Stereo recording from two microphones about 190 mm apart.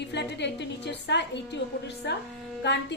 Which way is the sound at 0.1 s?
65° left (ahead or behind).